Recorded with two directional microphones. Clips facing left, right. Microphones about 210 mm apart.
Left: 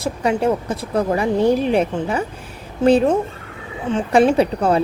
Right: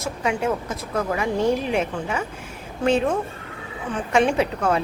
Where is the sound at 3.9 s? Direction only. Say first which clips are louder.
Left 6 dB; 35° left (ahead or behind).